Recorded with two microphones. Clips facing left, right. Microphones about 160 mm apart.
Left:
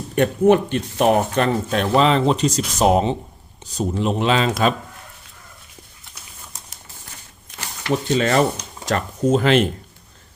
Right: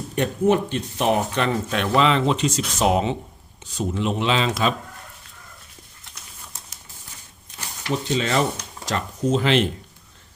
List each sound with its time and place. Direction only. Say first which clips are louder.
0.2 s speech: left 5 dB; 60° left (ahead or behind)
7.5 s speech: left 4 dB; 75° left (ahead or behind); by 9.6 s 50° left (ahead or behind)